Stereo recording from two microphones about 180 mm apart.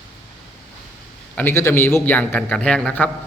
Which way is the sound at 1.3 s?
10° left (ahead or behind).